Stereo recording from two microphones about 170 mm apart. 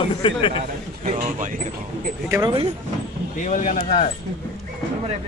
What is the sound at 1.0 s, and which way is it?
Speech, 50° right (ahead or behind).